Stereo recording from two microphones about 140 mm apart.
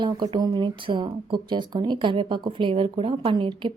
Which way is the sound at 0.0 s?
30° right (ahead or behind).